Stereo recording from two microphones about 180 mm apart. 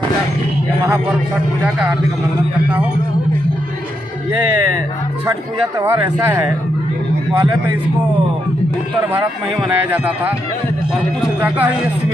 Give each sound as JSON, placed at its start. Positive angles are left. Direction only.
{"t": 5.8, "sound": "speech", "side_deg": -20}
{"t": 9.6, "sound": "speech", "side_deg": -10}